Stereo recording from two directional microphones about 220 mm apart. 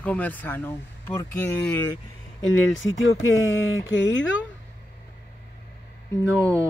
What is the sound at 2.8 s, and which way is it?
Speech, 55° left (ahead or behind).